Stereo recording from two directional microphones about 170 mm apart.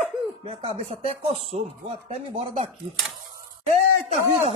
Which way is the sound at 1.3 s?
Centre (ahead or behind).